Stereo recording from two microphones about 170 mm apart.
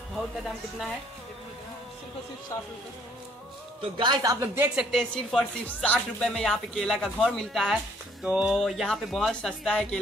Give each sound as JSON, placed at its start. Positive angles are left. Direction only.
{"t": 2.5, "sound": "speech", "side_deg": 20}
{"t": 3.9, "sound": "speech", "side_deg": -25}
{"t": 4.9, "sound": "speech", "side_deg": 5}